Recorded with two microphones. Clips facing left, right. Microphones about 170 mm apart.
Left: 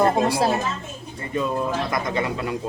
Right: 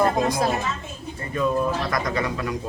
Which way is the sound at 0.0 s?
30° left (ahead or behind).